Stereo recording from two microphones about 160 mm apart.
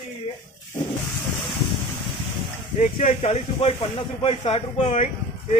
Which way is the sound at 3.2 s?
40° left (ahead or behind).